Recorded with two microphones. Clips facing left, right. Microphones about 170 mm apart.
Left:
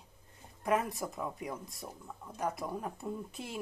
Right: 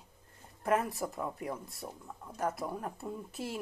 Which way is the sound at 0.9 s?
Centre (ahead or behind).